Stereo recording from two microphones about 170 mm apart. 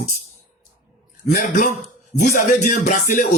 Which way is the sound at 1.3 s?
55° left (ahead or behind).